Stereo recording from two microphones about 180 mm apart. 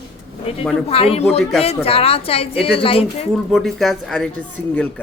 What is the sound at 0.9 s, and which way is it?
A woman's voice, 35° left (ahead or behind).